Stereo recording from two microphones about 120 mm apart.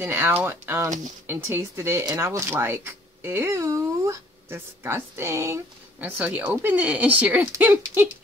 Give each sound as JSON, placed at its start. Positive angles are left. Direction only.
{"t": 0.0, "sound": "speech", "side_deg": -20}
{"t": 5.9, "sound": "speech", "side_deg": -15}